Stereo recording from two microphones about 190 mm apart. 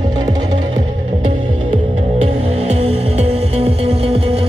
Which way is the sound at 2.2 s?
35° right (ahead or behind).